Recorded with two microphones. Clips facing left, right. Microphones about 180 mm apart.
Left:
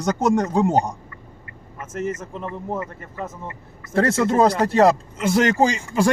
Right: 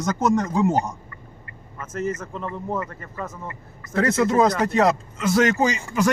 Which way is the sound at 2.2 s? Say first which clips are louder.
Even; 20° left (ahead or behind).